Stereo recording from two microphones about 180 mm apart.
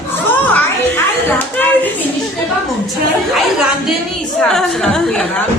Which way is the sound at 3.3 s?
Centre (ahead or behind).